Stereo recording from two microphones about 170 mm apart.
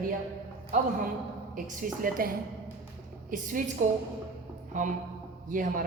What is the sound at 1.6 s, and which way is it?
A woman's voice, 55° right (ahead or behind).